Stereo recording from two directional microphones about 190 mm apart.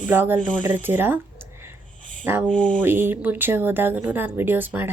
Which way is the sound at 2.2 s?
10° right (ahead or behind).